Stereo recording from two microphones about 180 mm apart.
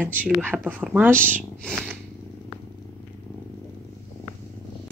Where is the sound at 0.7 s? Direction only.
10° right (ahead or behind).